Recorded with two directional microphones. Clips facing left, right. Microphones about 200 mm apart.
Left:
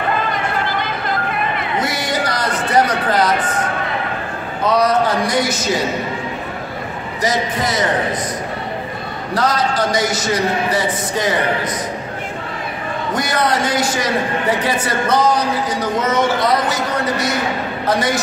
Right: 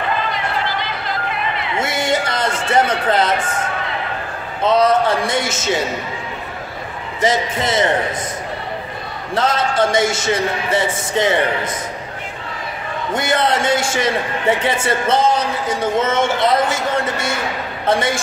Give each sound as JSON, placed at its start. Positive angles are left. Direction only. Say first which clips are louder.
{"t": 0.3, "sound": "a sound", "louder": "left 1 dB", "side_deg": 50}
{"t": 1.8, "sound": "a sound", "louder": "right 3 dB", "side_deg": -25}
{"t": 4.6, "sound": "a man's voice", "louder": "right 1 dB", "side_deg": -25}
{"t": 7.2, "sound": "a man's voice", "louder": "right 1 dB", "side_deg": -25}
{"t": 9.3, "sound": "a man's voice", "louder": "even", "side_deg": -25}
{"t": 13.1, "sound": "a man's voice", "louder": "right 1 dB", "side_deg": -25}